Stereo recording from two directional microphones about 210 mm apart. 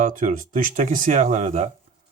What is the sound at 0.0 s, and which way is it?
Speech, 40° right (ahead or behind).